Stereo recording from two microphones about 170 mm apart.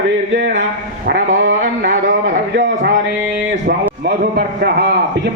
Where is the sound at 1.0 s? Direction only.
60° right (ahead or behind).